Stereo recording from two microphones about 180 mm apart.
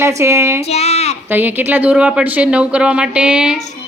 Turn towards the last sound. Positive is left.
turn(degrees=-5)  # may be behind; listen again after turning